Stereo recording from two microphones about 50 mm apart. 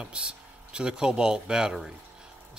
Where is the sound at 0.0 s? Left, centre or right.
Centre.